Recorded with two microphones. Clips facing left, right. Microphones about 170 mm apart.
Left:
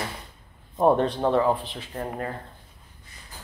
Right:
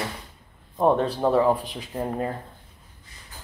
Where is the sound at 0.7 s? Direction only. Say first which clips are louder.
Even; centre (ahead or behind); by 2.3 s 15° right (ahead or behind).